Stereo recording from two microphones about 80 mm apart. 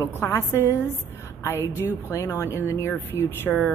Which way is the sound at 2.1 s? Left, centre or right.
Left.